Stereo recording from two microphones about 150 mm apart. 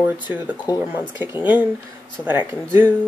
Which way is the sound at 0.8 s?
15° right (ahead or behind).